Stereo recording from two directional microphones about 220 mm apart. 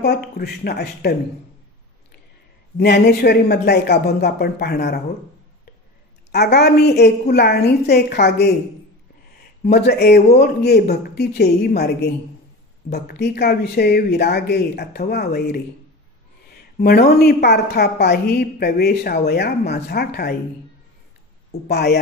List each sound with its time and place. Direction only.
0.0 s a woman's voice: 50° left (ahead or behind)
2.8 s a woman's voice: 50° left (ahead or behind)
6.3 s a woman's voice: 45° left (ahead or behind)
9.6 s a woman's voice: 45° left (ahead or behind)
16.7 s a woman's voice: 45° left (ahead or behind)
21.5 s speech: 50° left (ahead or behind)